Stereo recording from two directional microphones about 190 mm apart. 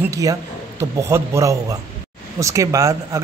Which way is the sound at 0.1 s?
15° right (ahead or behind).